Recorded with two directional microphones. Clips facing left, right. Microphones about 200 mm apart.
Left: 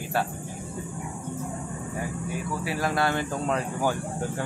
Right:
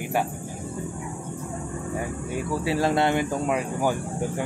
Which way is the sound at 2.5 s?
25° right (ahead or behind).